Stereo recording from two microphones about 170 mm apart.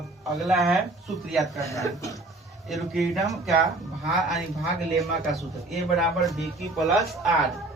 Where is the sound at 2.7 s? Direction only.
Centre (ahead or behind).